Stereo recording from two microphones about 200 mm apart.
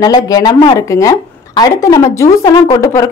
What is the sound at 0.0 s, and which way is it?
A woman's voice, 20° left (ahead or behind).